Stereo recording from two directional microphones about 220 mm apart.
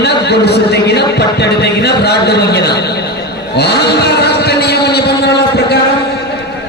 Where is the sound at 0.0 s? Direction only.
50° left (ahead or behind).